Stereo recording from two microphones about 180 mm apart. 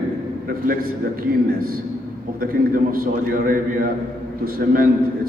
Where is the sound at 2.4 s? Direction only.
55° right (ahead or behind).